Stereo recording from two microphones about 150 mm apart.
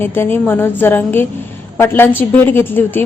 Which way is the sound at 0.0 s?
15° left (ahead or behind).